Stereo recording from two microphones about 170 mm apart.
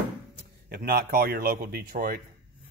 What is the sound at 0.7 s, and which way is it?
A man's voice, 60° right (ahead or behind).